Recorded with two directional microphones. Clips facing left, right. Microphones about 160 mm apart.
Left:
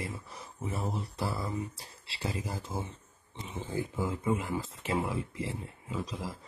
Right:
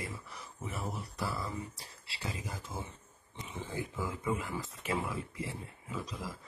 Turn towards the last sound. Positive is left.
turn(degrees=25)  # may be behind; listen again after turning